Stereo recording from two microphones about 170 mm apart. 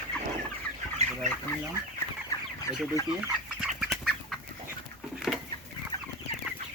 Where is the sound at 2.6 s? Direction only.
20° left (ahead or behind).